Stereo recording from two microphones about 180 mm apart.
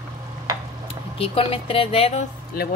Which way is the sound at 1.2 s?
30° left (ahead or behind).